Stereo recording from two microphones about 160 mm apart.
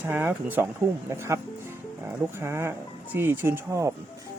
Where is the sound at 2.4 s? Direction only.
15° right (ahead or behind).